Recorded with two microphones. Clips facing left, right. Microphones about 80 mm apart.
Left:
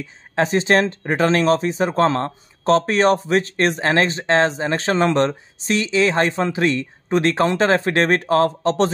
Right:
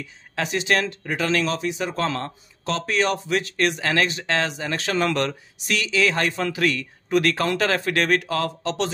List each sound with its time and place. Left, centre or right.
0.0 s speech: left